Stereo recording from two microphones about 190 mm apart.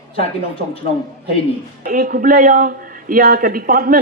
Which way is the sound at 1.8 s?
45° right (ahead or behind).